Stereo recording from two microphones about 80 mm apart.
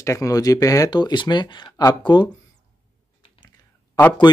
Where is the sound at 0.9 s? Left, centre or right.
Left.